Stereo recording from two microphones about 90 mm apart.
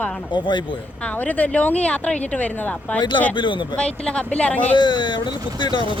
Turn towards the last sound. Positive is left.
turn(degrees=65)  # may be behind; listen again after turning